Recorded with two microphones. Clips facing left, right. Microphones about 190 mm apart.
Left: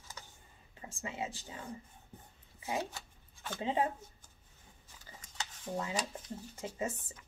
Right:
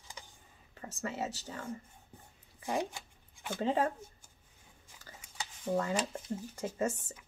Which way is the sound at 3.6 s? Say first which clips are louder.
Right 2 dB; 45° right (ahead or behind).